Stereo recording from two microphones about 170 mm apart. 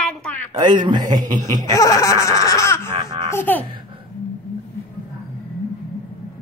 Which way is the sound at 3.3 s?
10° left (ahead or behind).